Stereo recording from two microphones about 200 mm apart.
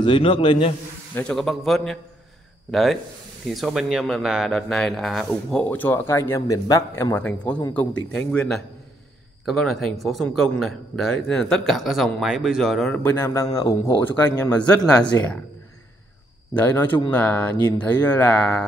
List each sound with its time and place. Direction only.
0.0 s a man's voice: 25° left (ahead or behind)
1.1 s speech: 5° left (ahead or behind)
7.2 s speech: 5° left (ahead or behind)
13.2 s speech: 15° left (ahead or behind)
14.2 s speech: 5° left (ahead or behind)
16.5 s speech: 10° left (ahead or behind)